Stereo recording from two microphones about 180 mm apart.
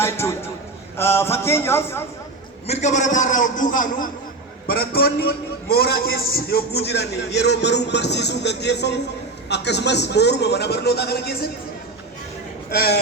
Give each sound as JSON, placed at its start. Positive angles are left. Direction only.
{"t": 0.0, "sound": "a man's voice", "side_deg": 15}
{"t": 2.6, "sound": "a man's voice", "side_deg": 40}
{"t": 12.7, "sound": "a man's voice", "side_deg": 55}